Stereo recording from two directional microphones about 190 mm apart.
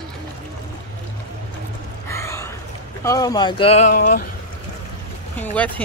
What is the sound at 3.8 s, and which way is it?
Speech, 45° left (ahead or behind).